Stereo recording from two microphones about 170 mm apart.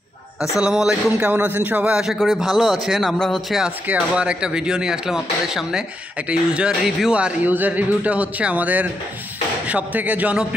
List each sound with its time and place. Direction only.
0.6 s speech: 5° right (ahead or behind)